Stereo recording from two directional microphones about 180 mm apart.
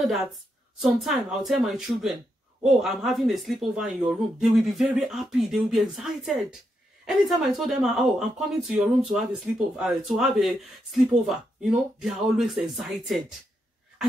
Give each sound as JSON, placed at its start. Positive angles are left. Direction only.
{"t": 0.7, "sound": "speech", "side_deg": 0}